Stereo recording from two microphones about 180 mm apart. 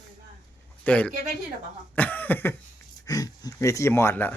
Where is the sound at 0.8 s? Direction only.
10° left (ahead or behind).